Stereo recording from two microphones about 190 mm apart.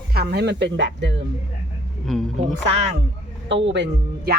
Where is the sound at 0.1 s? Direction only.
55° right (ahead or behind).